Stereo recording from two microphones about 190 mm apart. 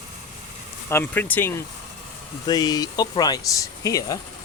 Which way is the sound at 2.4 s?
20° left (ahead or behind).